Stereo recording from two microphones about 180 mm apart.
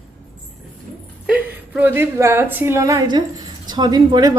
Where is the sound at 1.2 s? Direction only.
10° right (ahead or behind).